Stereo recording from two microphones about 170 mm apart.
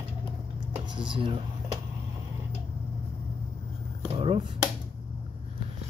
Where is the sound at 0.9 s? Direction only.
25° right (ahead or behind).